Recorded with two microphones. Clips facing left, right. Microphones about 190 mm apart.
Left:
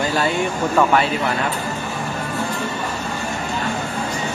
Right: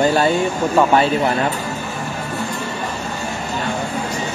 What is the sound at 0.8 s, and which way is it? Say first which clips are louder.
Speech: right 2 dB; 25° right (ahead or behind).